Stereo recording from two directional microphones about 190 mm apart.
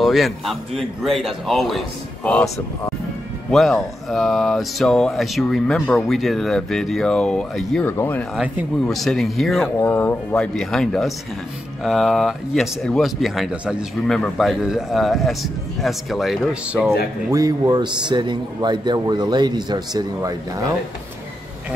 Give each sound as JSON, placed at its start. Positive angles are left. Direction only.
{"t": 0.0, "sound": "speech", "side_deg": 0}
{"t": 3.5, "sound": "speech", "side_deg": 0}
{"t": 8.4, "sound": "speech", "side_deg": 0}
{"t": 17.3, "sound": "a man's voice", "side_deg": -20}